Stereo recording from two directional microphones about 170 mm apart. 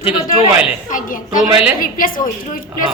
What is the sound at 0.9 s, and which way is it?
A woman's voice, 50° left (ahead or behind).